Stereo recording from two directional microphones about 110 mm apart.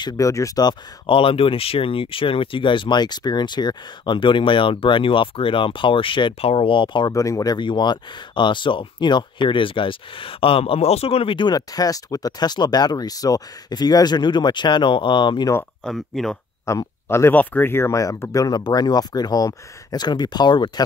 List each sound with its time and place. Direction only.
0.2 s speech: 30° left (ahead or behind); by 7.1 s 45° left (ahead or behind)
7.1 s speech: 30° left (ahead or behind)
15.8 s speech: 5° left (ahead or behind)
16.6 s speech: 25° left (ahead or behind); by 20.8 s 40° left (ahead or behind)